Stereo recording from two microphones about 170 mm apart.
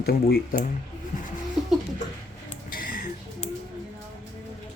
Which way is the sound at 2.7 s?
60° left (ahead or behind).